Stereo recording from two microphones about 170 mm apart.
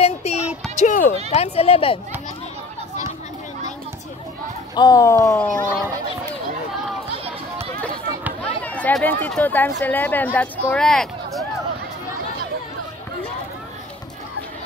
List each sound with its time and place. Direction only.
0.0 s music: 40° left (ahead or behind)
1.3 s speech: 35° left (ahead or behind)
4.7 s speech: 20° left (ahead or behind)
5.3 s a child's voice: 5° left (ahead or behind)
8.6 s speech: 10° left (ahead or behind)